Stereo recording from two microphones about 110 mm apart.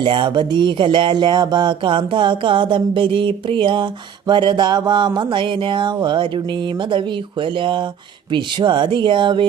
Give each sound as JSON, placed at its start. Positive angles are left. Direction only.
{"t": 0.0, "sound": "speech", "side_deg": -50}
{"t": 7.4, "sound": "speech", "side_deg": -50}